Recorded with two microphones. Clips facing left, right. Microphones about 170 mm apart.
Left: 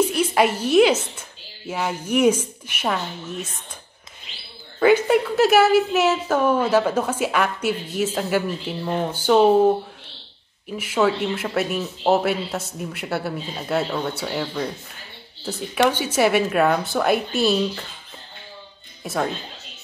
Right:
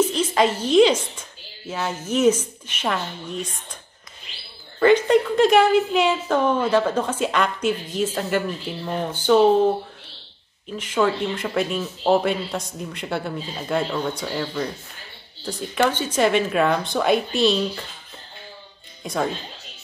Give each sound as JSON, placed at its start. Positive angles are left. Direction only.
{"t": 0.0, "sound": "a woman's voice", "side_deg": 10}
{"t": 4.7, "sound": "a woman's voice", "side_deg": 5}
{"t": 10.8, "sound": "a woman's voice", "side_deg": 10}
{"t": 19.0, "sound": "speech", "side_deg": 0}